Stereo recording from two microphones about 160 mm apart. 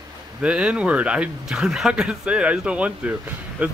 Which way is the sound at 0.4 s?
5° right (ahead or behind).